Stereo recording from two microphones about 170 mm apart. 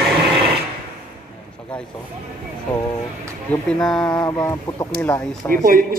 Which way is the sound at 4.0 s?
25° left (ahead or behind).